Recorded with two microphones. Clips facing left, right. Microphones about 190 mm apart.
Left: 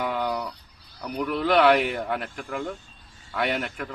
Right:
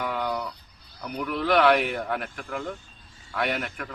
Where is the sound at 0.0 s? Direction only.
5° left (ahead or behind).